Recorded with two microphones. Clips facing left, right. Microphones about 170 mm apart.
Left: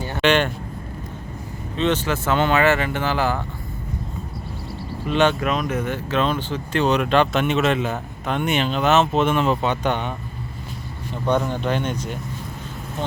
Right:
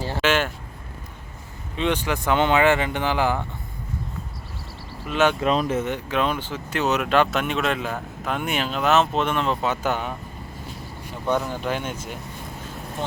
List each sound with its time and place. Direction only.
0.2 s speech: 5° right (ahead or behind)
1.7 s speech: 15° right (ahead or behind)
5.0 s speech: 5° right (ahead or behind)
5.3 s speech: 30° right (ahead or behind); by 10.2 s 5° right (ahead or behind)
11.5 s speech: 10° right (ahead or behind)